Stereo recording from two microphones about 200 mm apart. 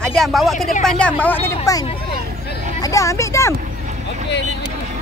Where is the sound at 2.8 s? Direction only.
15° left (ahead or behind).